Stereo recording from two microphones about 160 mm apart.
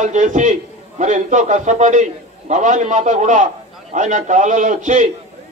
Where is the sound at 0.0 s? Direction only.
50° right (ahead or behind).